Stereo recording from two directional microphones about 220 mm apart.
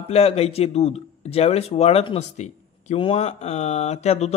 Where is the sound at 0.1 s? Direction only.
25° left (ahead or behind).